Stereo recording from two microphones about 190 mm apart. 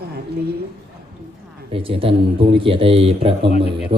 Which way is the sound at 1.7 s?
30° right (ahead or behind).